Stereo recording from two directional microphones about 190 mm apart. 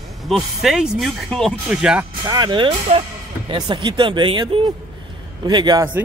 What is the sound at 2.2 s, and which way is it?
Speech, 20° right (ahead or behind).